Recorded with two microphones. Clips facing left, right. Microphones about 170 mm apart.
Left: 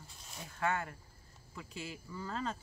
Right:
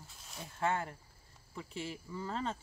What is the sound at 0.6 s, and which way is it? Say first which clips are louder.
Speech: right 1 dB; 30° right (ahead or behind).